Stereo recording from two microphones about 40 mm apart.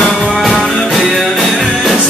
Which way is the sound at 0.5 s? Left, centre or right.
Centre.